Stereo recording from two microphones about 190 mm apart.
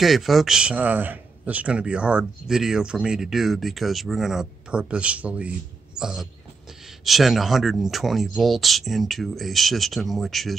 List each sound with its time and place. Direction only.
0.0 s a man's voice: centre (ahead or behind)